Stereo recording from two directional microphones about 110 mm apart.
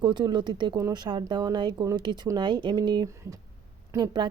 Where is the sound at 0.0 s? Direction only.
45° right (ahead or behind).